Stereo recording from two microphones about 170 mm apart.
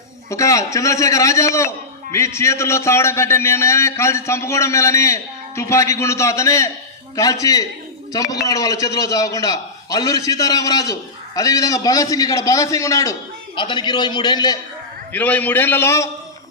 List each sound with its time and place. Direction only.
0.3 s a man's voice: 20° left (ahead or behind)
15.1 s a man's voice: 10° left (ahead or behind)